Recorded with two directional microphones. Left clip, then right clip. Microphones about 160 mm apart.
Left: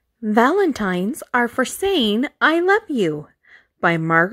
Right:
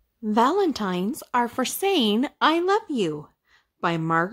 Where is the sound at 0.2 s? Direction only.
25° left (ahead or behind).